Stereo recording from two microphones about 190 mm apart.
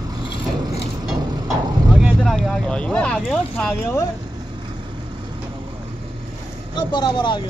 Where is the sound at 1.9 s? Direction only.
Centre (ahead or behind).